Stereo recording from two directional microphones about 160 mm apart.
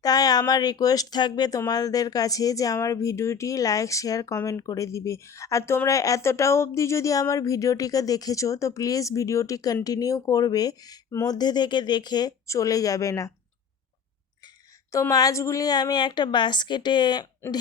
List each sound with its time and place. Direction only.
0.0 s speech: 25° left (ahead or behind)
14.9 s speech: 20° left (ahead or behind)